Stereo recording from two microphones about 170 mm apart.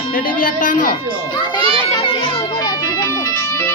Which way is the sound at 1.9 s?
25° left (ahead or behind).